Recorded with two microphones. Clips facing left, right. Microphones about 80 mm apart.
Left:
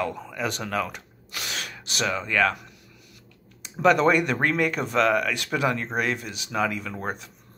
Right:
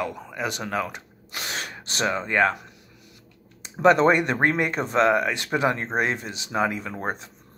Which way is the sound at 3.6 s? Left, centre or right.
Right.